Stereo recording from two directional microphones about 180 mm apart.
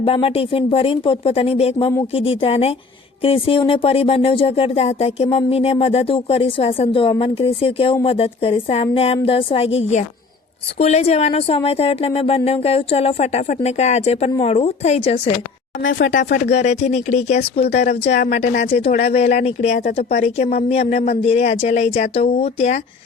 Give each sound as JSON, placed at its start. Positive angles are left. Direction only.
{"t": 0.0, "sound": "speech", "side_deg": 30}
{"t": 15.8, "sound": "speech", "side_deg": 90}
{"t": 16.1, "sound": "speech", "side_deg": 45}
{"t": 18.9, "sound": "speech", "side_deg": 60}
{"t": 19.1, "sound": "speech", "side_deg": 35}